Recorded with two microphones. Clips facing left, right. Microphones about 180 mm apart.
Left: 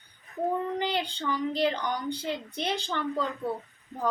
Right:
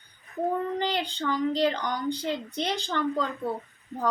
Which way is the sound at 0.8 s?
10° left (ahead or behind).